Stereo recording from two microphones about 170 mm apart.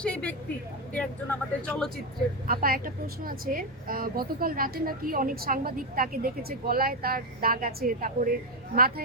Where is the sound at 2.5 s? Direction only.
60° right (ahead or behind).